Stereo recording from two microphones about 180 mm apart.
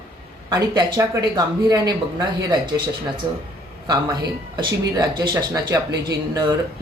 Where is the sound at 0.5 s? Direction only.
20° right (ahead or behind).